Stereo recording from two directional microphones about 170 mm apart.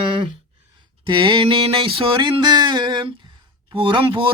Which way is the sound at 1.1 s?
30° right (ahead or behind).